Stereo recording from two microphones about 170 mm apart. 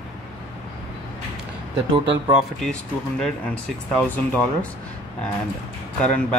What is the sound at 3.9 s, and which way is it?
Speech, 10° left (ahead or behind).